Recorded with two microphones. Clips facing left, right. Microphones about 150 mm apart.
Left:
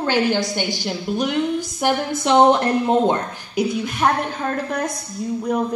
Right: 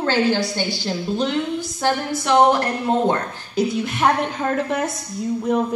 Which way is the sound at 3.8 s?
Centre (ahead or behind).